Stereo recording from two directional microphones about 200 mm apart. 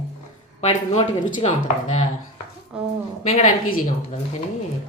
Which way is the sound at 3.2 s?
30° left (ahead or behind).